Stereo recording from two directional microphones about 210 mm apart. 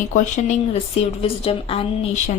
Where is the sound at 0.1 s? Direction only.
35° left (ahead or behind).